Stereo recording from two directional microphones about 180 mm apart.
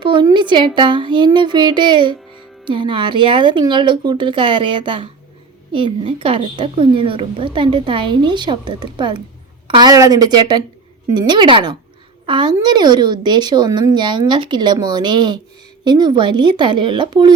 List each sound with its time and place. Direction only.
0.0 s a woman's voice: 25° right (ahead or behind)